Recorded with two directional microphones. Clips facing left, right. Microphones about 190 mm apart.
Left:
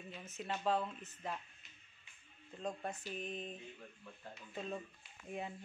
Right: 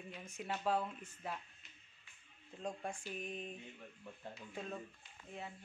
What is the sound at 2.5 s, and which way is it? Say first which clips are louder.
Speech: left 1 dB; 10° right (ahead or behind).